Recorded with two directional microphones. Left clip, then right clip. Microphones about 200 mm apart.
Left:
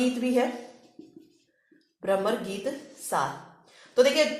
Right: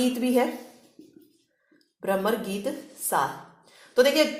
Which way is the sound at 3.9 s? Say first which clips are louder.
Right 1 dB; 35° right (ahead or behind).